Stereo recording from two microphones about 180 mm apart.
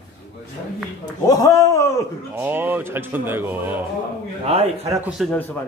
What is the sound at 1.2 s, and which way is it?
Speech, 20° left (ahead or behind).